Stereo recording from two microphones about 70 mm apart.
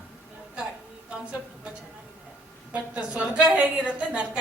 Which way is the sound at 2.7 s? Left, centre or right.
Centre.